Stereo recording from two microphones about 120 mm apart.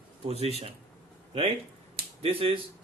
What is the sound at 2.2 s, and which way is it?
Speech, 50° right (ahead or behind).